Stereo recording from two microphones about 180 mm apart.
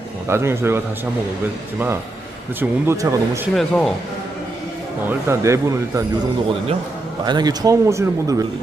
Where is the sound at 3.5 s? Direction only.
Centre (ahead or behind).